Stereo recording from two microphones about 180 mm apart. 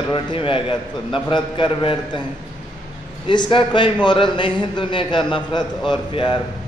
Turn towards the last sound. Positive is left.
turn(degrees=25)  # may be behind; listen again after turning